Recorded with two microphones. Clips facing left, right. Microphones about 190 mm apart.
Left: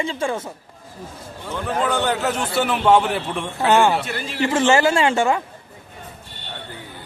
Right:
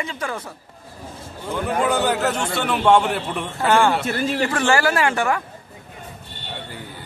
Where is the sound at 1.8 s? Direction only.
5° right (ahead or behind).